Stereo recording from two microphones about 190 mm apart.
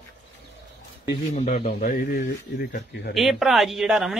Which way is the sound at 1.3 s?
35° left (ahead or behind).